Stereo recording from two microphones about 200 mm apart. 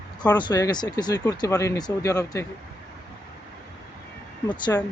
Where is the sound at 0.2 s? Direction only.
20° left (ahead or behind).